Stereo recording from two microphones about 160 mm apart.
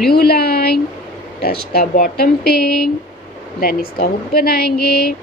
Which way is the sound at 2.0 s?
75° left (ahead or behind).